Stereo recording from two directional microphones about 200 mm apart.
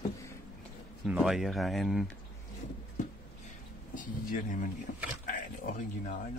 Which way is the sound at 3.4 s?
40° left (ahead or behind).